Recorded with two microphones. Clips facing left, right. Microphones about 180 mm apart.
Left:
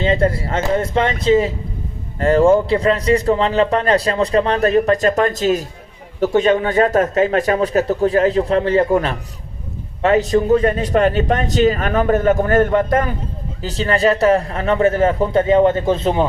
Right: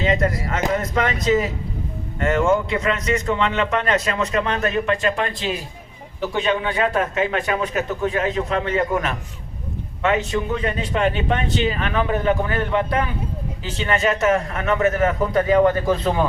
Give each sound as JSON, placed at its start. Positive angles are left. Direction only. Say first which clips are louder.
{"t": 0.0, "sound": "a man's voice", "louder": "left 4 dB", "side_deg": 30}